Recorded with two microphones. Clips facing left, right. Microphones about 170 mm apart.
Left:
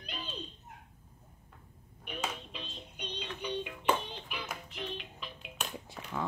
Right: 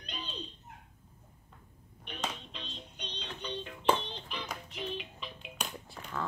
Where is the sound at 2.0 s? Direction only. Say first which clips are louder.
Left 1 dB; 5° left (ahead or behind).